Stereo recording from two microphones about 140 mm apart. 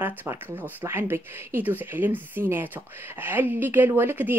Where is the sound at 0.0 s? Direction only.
15° right (ahead or behind).